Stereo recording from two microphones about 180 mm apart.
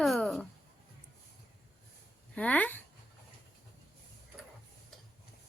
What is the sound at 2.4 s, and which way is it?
Speech, 10° left (ahead or behind).